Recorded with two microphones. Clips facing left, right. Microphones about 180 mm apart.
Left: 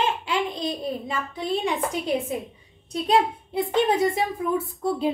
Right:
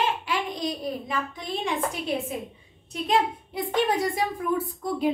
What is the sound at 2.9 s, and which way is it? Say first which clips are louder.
A child's voice: left 3 dB; 30° left (ahead or behind).